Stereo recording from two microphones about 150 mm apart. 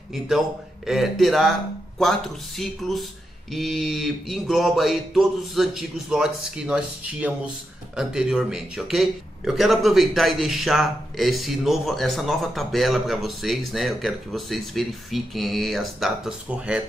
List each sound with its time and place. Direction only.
0.8 s a man's voice: centre (ahead or behind)